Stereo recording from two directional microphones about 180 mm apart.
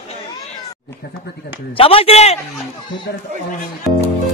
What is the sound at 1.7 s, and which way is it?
Speech, 30° left (ahead or behind).